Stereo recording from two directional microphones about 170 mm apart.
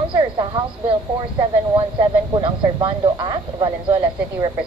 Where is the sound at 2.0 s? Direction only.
25° right (ahead or behind).